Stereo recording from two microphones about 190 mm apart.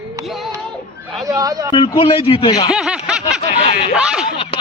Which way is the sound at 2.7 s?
5° right (ahead or behind).